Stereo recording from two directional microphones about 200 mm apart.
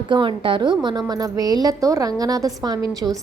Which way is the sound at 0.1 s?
25° right (ahead or behind).